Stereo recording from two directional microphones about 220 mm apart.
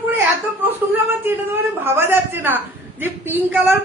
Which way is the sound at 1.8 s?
10° right (ahead or behind).